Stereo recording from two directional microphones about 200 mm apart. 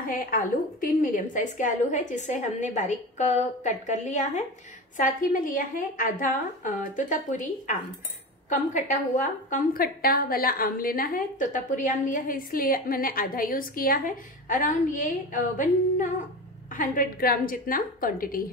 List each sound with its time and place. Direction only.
0.1 s a woman's voice: 45° left (ahead or behind)